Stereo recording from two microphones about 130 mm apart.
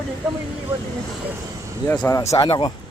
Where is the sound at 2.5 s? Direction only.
40° left (ahead or behind).